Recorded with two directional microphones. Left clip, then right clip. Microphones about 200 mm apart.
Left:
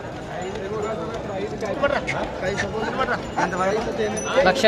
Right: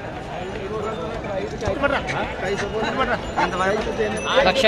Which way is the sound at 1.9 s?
45° right (ahead or behind).